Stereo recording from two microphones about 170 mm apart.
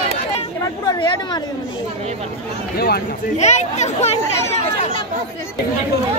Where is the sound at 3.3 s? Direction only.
45° left (ahead or behind).